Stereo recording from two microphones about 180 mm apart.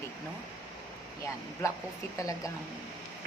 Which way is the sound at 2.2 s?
20° left (ahead or behind).